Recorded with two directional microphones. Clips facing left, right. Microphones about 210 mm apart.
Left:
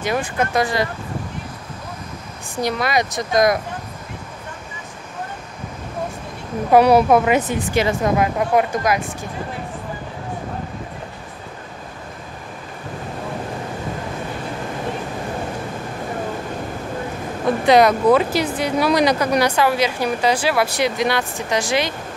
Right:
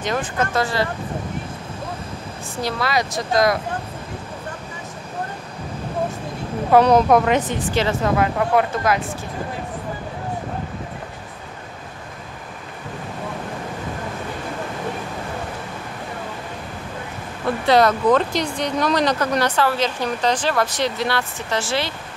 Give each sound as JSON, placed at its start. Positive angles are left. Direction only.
{"t": 0.0, "sound": "speech", "side_deg": 10}
{"t": 2.6, "sound": "speech", "side_deg": 20}
{"t": 6.7, "sound": "speech", "side_deg": 10}
{"t": 17.6, "sound": "speech", "side_deg": 15}